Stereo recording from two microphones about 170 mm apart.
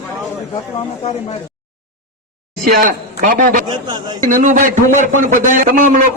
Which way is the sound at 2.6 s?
55° right (ahead or behind).